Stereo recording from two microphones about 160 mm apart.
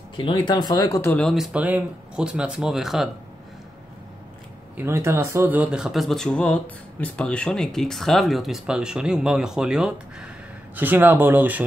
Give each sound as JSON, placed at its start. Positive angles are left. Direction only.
{"t": 0.1, "sound": "speech", "side_deg": 30}
{"t": 1.1, "sound": "speech", "side_deg": 0}
{"t": 4.7, "sound": "speech", "side_deg": -15}